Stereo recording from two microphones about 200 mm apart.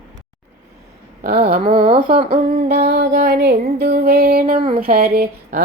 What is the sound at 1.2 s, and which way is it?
Child singing, 50° right (ahead or behind).